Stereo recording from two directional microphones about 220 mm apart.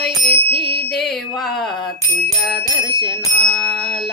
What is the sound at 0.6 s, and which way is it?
Music, 50° left (ahead or behind).